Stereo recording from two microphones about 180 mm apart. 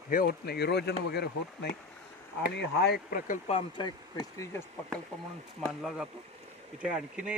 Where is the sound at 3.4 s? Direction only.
30° left (ahead or behind).